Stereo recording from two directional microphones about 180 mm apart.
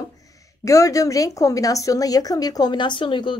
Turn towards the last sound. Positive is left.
turn(degrees=25)  # may be behind; listen again after turning